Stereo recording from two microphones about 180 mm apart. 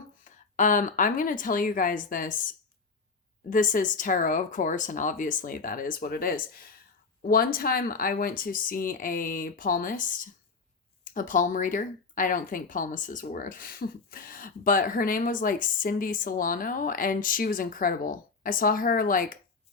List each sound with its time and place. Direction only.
0.3 s speech: 45° left (ahead or behind)
3.5 s speech: 45° left (ahead or behind)
11.0 s speech: 50° left (ahead or behind)